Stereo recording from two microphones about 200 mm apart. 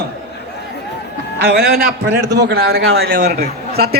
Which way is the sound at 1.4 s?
50° right (ahead or behind).